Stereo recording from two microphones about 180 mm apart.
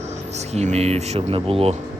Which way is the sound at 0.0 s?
40° right (ahead or behind).